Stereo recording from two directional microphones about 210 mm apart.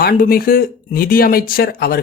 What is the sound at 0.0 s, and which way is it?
Speech, 45° left (ahead or behind).